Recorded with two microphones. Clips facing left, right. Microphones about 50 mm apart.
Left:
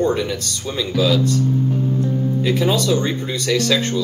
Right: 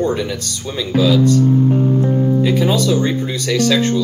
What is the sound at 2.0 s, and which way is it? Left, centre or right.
Speech, right.